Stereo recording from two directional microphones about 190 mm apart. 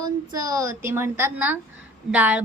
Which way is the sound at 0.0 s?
20° right (ahead or behind).